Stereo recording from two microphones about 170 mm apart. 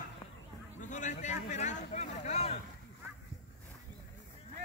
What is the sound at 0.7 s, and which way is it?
Speech, 45° left (ahead or behind).